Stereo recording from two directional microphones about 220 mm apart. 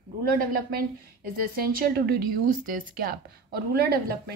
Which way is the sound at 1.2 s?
40° right (ahead or behind).